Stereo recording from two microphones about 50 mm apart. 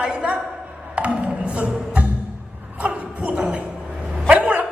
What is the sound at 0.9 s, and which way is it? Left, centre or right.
Music, right.